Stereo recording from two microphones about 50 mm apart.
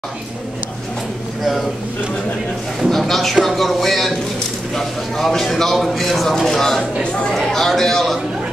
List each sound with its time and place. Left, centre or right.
2.9 s a man's voice: centre
7.0 s speech: centre
7.3 s a man's voice: centre